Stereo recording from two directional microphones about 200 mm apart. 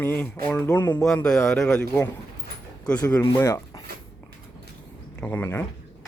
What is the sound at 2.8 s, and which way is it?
Speech, 5° left (ahead or behind).